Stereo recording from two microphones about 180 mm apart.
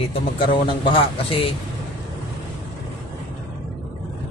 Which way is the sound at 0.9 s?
30° left (ahead or behind).